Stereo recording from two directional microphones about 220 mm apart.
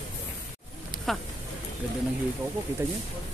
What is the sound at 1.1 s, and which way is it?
Speech, centre (ahead or behind).